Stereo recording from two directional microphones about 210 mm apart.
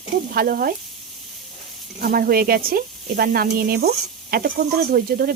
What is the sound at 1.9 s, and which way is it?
Speech, 45° right (ahead or behind).